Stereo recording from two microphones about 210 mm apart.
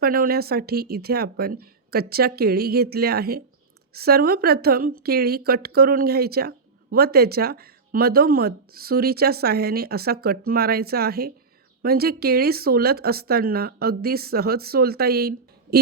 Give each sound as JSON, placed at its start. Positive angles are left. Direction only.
{"t": 0.0, "sound": "speech", "side_deg": -45}